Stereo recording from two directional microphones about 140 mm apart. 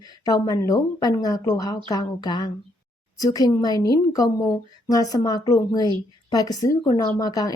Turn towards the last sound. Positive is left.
turn(degrees=25)  # may be behind; listen again after turning